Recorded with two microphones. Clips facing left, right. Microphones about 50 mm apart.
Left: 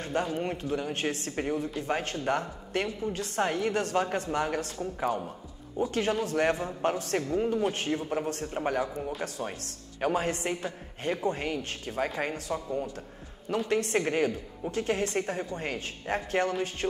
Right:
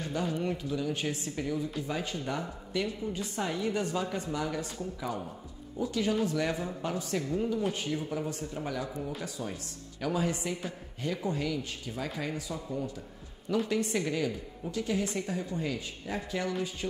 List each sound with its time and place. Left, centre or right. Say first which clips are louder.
0.0 s a woman's voice: left 2 dB; left
7.7 s a woman's voice: left 3 dB; left
13.7 s a woman's voice: left 3 dB; left